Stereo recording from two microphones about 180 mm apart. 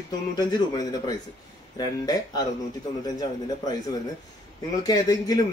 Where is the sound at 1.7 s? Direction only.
20° left (ahead or behind).